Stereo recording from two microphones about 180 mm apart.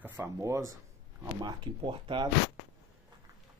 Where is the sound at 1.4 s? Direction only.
25° right (ahead or behind).